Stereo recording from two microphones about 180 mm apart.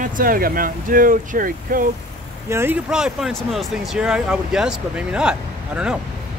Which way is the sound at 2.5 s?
10° right (ahead or behind).